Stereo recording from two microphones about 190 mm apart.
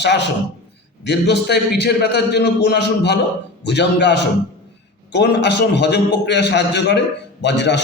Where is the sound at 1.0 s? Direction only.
60° left (ahead or behind).